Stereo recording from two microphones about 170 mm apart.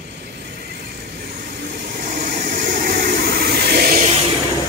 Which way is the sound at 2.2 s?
55° right (ahead or behind).